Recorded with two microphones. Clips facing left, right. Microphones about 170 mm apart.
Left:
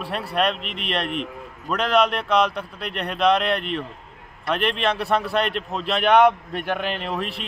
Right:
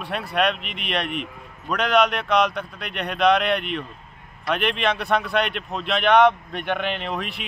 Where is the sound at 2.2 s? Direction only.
5° left (ahead or behind).